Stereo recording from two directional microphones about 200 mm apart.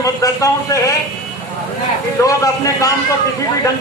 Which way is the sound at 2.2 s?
15° left (ahead or behind).